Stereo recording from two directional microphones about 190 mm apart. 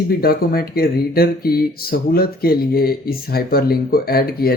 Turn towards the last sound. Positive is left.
turn(degrees=50)  # may be behind; listen again after turning